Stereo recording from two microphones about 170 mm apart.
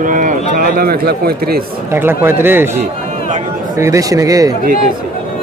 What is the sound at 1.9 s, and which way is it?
A man's voice, 15° right (ahead or behind).